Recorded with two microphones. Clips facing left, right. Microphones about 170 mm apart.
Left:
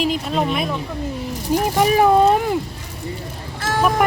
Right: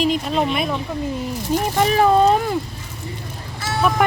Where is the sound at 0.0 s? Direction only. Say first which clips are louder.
Right 1 dB; centre (ahead or behind).